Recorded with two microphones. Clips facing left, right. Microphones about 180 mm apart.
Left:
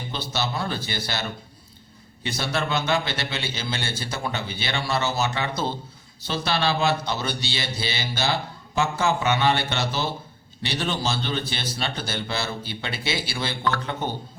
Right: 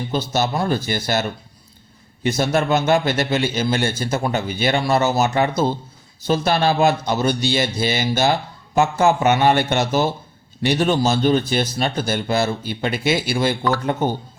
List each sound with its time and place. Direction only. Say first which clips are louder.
0.1 s a man's voice: right 7 dB; 45° right (ahead or behind)
2.2 s a man's voice: right 8 dB; 45° right (ahead or behind)